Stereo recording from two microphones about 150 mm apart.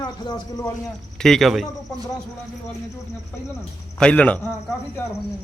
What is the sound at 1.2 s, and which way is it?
Speech, centre (ahead or behind).